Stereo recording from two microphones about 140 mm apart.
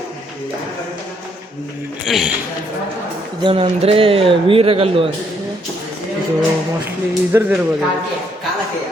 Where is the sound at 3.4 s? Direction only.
40° right (ahead or behind).